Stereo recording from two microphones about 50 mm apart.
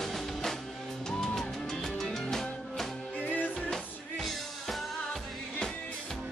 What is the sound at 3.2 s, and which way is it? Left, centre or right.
Music, left.